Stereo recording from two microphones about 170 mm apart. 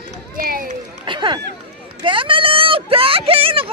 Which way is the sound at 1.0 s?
30° right (ahead or behind).